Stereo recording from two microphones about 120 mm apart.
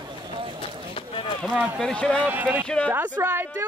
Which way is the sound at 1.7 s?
5° left (ahead or behind).